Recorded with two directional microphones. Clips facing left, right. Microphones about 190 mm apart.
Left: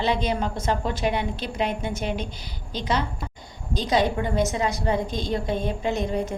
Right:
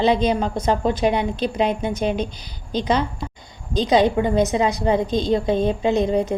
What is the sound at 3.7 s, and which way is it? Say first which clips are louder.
A woman's voice: right 6 dB; 20° right (ahead or behind).